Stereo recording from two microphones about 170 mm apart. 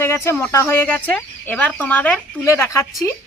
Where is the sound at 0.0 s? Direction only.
15° left (ahead or behind).